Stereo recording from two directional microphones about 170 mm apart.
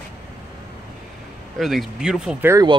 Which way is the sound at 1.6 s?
Centre (ahead or behind).